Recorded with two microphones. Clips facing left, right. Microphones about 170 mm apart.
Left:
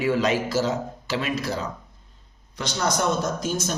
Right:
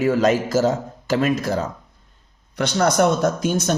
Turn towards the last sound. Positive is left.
turn(degrees=-65)  # may be behind; listen again after turning